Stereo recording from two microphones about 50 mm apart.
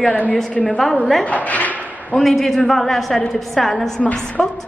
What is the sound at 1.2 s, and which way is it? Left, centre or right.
Speech, left.